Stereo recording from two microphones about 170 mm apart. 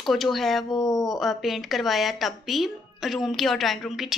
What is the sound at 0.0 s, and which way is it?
Speech, centre (ahead or behind).